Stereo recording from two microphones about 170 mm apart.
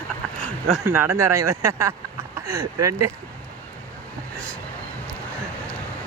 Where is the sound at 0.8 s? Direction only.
15° right (ahead or behind).